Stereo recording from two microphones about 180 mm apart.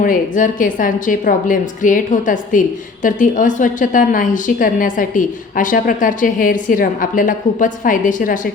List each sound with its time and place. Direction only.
0.0 s a woman's voice: 50° left (ahead or behind)